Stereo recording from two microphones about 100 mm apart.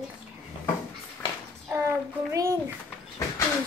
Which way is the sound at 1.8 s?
30° right (ahead or behind).